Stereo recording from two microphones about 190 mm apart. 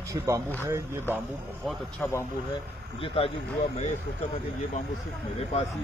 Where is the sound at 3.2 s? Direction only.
30° left (ahead or behind).